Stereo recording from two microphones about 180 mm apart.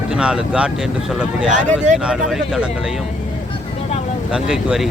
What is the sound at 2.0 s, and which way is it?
Speech, 5° right (ahead or behind).